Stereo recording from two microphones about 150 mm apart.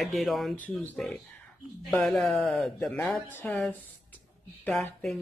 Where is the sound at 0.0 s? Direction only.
Centre (ahead or behind).